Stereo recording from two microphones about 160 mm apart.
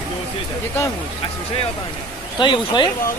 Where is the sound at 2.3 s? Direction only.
30° left (ahead or behind).